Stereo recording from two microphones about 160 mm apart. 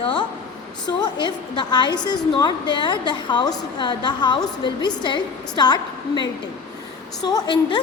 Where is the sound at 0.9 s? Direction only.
25° left (ahead or behind).